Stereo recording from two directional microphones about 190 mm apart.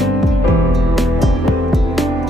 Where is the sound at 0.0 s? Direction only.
Centre (ahead or behind).